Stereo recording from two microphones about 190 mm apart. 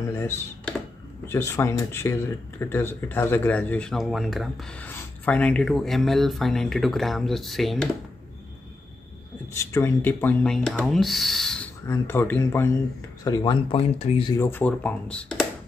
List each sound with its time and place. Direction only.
1.2 s speech: 15° left (ahead or behind)
9.6 s speech: 15° left (ahead or behind)
14.4 s speech: 10° left (ahead or behind)